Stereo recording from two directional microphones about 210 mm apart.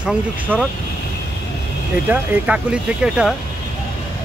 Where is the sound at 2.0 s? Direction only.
5° right (ahead or behind).